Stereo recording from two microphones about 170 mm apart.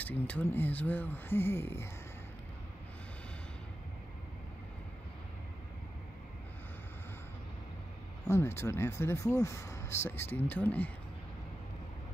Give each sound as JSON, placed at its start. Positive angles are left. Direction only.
{"t": 0.0, "sound": "speech", "side_deg": 10}
{"t": 8.3, "sound": "speech", "side_deg": 15}